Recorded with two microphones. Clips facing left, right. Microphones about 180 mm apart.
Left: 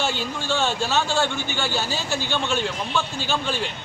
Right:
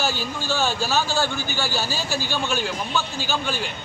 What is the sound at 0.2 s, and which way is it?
Speech, 5° right (ahead or behind).